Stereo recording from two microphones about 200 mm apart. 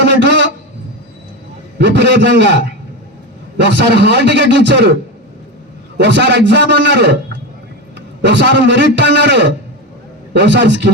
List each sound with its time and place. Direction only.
0.0 s a sound: 60° right (ahead or behind)
1.8 s a man's voice: 60° right (ahead or behind)
6.0 s a man's voice: 60° right (ahead or behind)
8.2 s a man's voice: 60° right (ahead or behind)